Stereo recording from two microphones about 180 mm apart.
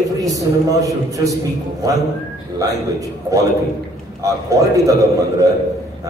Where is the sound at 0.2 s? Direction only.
20° right (ahead or behind).